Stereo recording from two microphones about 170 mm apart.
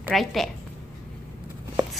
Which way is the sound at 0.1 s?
Centre (ahead or behind).